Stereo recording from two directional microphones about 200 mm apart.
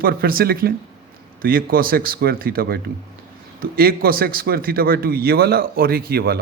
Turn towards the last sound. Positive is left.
turn(degrees=-50)  # may be behind; listen again after turning